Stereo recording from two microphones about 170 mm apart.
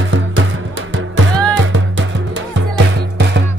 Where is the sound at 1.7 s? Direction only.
90° right.